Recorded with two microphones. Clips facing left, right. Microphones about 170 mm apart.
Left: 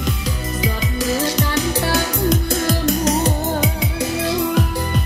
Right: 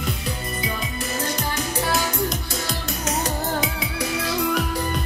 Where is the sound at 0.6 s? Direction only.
90° left.